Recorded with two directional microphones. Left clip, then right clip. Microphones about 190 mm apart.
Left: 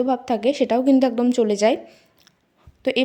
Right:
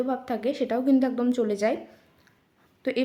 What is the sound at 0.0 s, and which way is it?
A woman's voice, 30° left (ahead or behind).